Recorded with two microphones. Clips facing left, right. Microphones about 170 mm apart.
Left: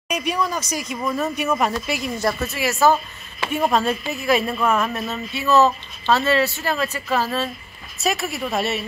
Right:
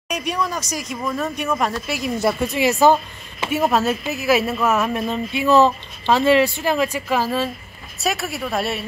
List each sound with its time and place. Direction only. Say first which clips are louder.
0.1 s speech: left 1 dB; centre (ahead or behind)
2.4 s speech: right 3 dB; 20° right (ahead or behind)
3.3 s a woman's voice: right 1 dB; 5° right (ahead or behind)